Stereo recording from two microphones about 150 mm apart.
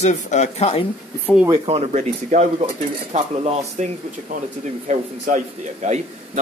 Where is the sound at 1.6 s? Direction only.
45° right (ahead or behind).